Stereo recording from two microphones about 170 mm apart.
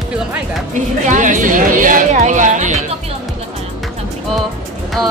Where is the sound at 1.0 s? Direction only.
50° right (ahead or behind).